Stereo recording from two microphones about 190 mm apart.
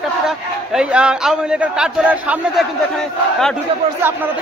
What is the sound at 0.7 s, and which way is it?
A man's voice, 5° right (ahead or behind).